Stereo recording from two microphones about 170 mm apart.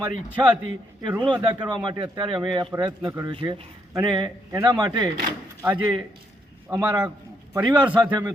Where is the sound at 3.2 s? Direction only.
25° right (ahead or behind).